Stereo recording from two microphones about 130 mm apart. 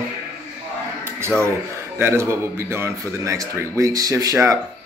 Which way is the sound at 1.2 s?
20° right (ahead or behind).